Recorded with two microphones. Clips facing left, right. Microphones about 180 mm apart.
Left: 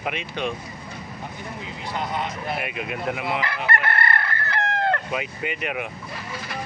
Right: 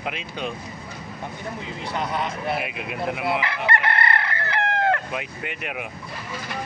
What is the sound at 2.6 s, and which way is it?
Speech, 5° right (ahead or behind).